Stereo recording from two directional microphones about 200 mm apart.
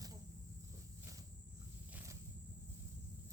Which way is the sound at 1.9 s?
15° right (ahead or behind).